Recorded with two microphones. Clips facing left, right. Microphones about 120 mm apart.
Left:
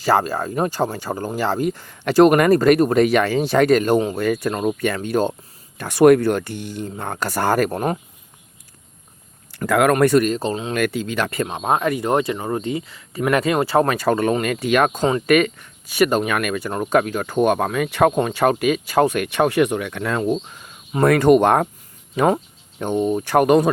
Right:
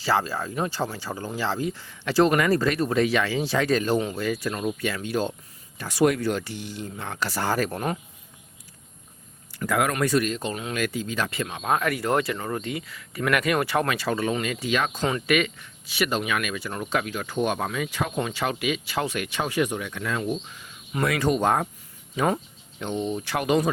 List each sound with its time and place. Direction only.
0.0 s speech: 50° left (ahead or behind)
9.5 s speech: 65° left (ahead or behind)
9.9 s speech: 55° left (ahead or behind); by 10.8 s 30° left (ahead or behind)
10.8 s speech: 65° left (ahead or behind)
11.4 s speech: 30° left (ahead or behind)
13.9 s speech: 50° left (ahead or behind); by 20.4 s 65° left (ahead or behind)
20.5 s speech: 45° left (ahead or behind); by 22.3 s 65° left (ahead or behind)
22.8 s speech: 50° left (ahead or behind)